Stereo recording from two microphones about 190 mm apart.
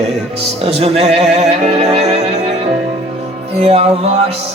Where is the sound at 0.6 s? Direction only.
30° right (ahead or behind).